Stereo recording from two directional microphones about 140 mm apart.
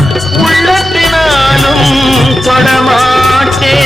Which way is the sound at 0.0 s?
Centre (ahead or behind).